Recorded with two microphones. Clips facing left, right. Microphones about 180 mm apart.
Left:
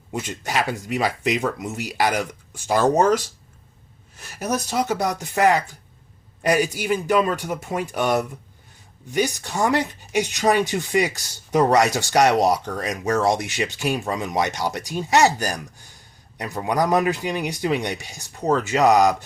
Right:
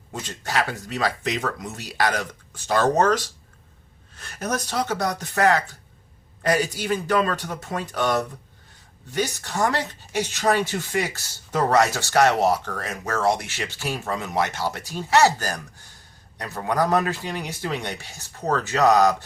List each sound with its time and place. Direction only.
0.1 s speech: 15° left (ahead or behind)